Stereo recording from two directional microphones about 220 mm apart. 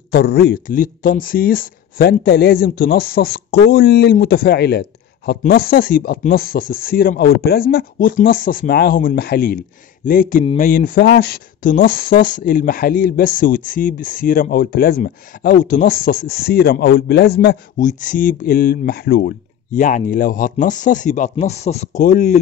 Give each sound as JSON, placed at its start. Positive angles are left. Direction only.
{"t": 0.1, "sound": "speech", "side_deg": 50}
{"t": 10.4, "sound": "a sound", "side_deg": 25}
{"t": 10.7, "sound": "speech", "side_deg": 40}